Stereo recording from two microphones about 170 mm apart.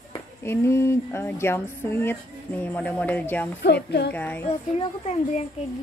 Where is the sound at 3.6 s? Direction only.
85° left.